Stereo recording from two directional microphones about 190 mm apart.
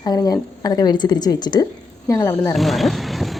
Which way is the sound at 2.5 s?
Centre (ahead or behind).